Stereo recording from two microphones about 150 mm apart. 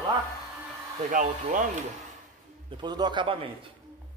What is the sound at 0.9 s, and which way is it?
Hair dryer, 60° right (ahead or behind).